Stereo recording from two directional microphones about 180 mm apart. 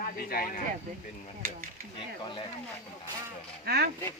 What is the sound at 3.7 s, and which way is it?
Speech, 65° right (ahead or behind).